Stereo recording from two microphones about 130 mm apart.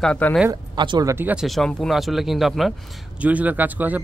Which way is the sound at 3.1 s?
10° right (ahead or behind).